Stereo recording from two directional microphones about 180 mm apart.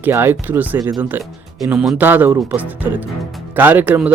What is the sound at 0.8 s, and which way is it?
Speech, 20° right (ahead or behind).